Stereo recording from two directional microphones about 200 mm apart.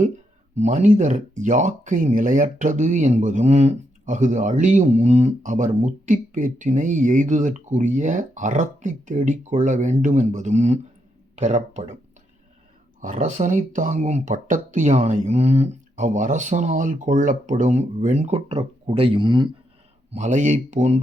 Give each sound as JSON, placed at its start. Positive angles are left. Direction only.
{"t": 0.5, "sound": "speech", "side_deg": -35}
{"t": 13.0, "sound": "speech", "side_deg": -40}
{"t": 20.1, "sound": "speech", "side_deg": -35}